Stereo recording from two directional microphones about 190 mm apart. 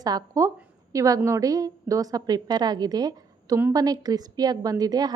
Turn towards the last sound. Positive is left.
turn(degrees=-20)  # may be behind; listen again after turning